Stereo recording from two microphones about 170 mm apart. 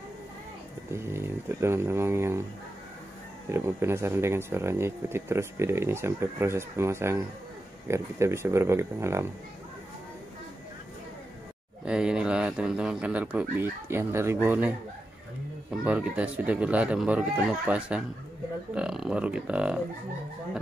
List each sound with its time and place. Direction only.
0.9 s speech: 15° right (ahead or behind)
3.4 s speech: 15° right (ahead or behind)
11.8 s speech: 5° right (ahead or behind)